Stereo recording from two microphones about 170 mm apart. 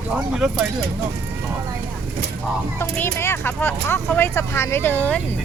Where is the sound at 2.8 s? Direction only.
15° left (ahead or behind).